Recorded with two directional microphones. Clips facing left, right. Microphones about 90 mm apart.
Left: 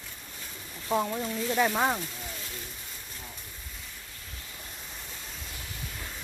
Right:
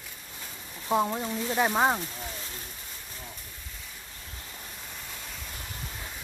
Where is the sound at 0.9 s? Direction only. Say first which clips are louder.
Right 2 dB; 20° right (ahead or behind).